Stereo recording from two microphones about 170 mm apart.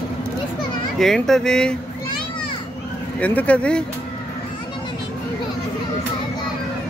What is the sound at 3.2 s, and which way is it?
Speech, 10° left (ahead or behind).